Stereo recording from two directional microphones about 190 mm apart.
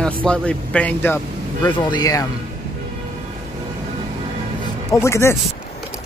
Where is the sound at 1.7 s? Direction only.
20° left (ahead or behind).